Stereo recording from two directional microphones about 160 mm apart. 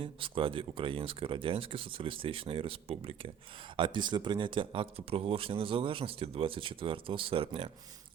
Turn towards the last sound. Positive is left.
turn(degrees=-35)  # may be behind; listen again after turning